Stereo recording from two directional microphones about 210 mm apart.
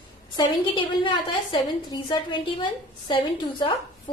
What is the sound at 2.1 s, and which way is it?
A woman's voice, 20° left (ahead or behind).